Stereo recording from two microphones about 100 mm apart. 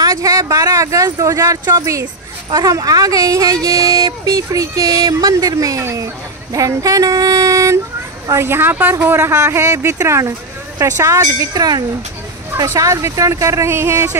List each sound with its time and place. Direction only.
0.0 s speech: 35° right (ahead or behind)